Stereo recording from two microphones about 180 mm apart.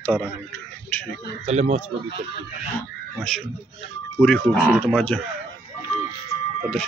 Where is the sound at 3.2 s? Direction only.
5° left (ahead or behind).